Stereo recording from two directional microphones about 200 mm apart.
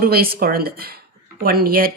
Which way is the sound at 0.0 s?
50° right (ahead or behind).